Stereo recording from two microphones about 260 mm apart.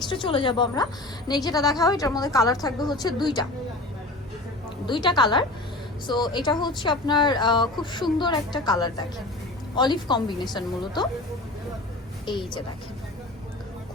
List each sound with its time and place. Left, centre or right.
0.1 s a woman's voice: centre
4.9 s speech: centre
12.3 s speech: centre